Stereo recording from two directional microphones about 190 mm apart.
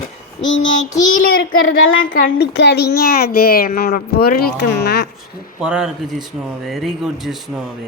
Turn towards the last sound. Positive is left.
turn(degrees=0)  # may be behind; listen again after turning